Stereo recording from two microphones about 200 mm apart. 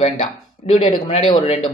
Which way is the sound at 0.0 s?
30° left (ahead or behind).